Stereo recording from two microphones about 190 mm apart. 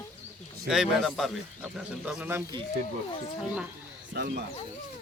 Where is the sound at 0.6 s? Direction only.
Centre (ahead or behind).